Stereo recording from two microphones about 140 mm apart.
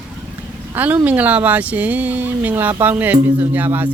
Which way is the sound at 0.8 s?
10° right (ahead or behind).